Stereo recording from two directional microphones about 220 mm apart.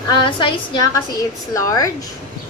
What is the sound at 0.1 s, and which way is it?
A woman's voice, 20° left (ahead or behind).